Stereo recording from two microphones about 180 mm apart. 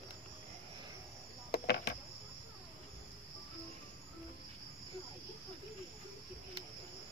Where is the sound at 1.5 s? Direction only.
60° left (ahead or behind).